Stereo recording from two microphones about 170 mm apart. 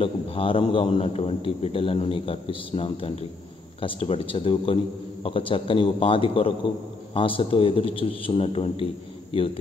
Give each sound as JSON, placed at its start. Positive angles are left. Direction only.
{"t": 0.0, "sound": "a man's voice", "side_deg": 30}